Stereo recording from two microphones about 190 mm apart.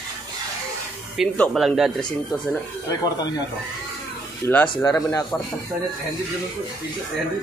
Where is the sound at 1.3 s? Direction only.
5° left (ahead or behind).